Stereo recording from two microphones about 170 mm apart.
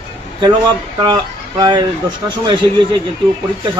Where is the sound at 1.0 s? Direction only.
25° right (ahead or behind).